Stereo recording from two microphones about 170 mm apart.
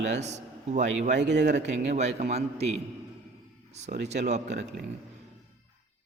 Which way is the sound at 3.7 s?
40° right (ahead or behind).